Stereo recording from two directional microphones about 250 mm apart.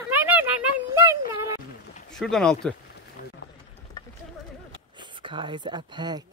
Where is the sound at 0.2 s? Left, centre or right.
Centre.